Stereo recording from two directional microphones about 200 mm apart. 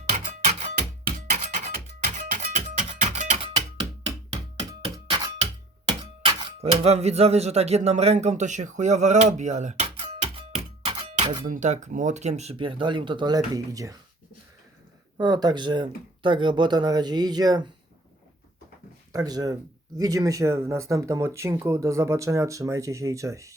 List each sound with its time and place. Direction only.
0.1 s a sound: 35° right (ahead or behind); by 5.3 s 20° right (ahead or behind)
6.0 s speech: 25° right (ahead or behind)
15.2 s speech: 20° right (ahead or behind)
19.1 s speech: 20° right (ahead or behind)